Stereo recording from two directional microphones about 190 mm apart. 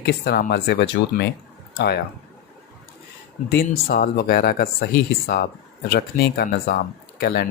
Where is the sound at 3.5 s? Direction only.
55° left (ahead or behind).